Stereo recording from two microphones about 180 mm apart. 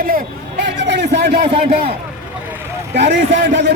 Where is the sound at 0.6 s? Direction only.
75° right (ahead or behind).